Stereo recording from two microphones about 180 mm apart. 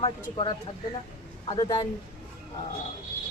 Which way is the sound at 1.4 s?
25° left (ahead or behind).